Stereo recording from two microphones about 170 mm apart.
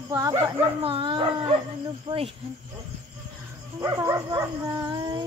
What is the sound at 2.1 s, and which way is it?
Speech, 35° right (ahead or behind).